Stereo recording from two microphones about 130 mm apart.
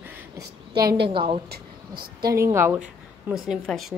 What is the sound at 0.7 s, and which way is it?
Speech, 35° right (ahead or behind).